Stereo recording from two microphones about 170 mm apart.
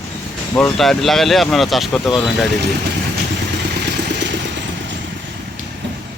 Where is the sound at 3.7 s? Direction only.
85° right.